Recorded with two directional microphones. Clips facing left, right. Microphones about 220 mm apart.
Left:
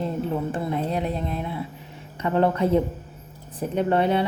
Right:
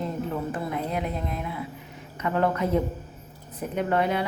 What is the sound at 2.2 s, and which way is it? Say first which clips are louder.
A woman's voice: left 4 dB; 30° left (ahead or behind).